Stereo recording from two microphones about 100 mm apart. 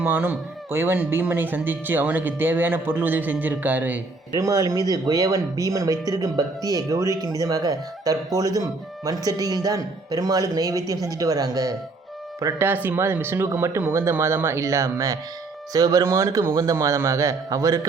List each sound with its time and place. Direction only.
0.0 s speech: 20° right (ahead or behind)
4.4 s speech: 35° right (ahead or behind)
12.5 s speech: 20° right (ahead or behind)